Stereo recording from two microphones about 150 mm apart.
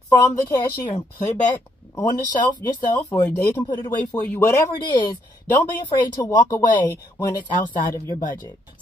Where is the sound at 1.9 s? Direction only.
30° left (ahead or behind).